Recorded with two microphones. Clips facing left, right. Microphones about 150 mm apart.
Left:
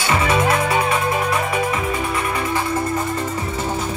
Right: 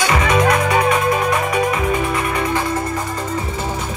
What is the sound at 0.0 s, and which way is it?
Music, 30° left (ahead or behind).